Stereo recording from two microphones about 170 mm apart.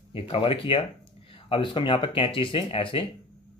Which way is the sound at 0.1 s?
35° left (ahead or behind).